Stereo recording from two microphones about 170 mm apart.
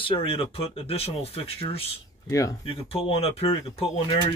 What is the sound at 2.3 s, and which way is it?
Speech, 20° left (ahead or behind).